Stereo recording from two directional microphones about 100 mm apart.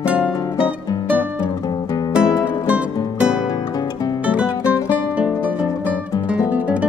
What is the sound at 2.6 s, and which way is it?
Music, 10° right (ahead or behind).